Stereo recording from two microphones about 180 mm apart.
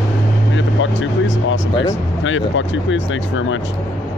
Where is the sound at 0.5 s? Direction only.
90° left.